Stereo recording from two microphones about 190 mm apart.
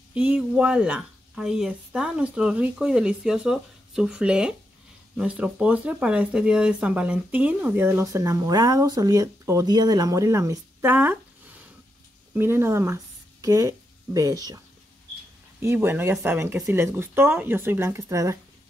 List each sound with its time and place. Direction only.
0.1 s speech: 5° right (ahead or behind)
12.4 s speech: 10° right (ahead or behind)
15.6 s speech: 10° right (ahead or behind)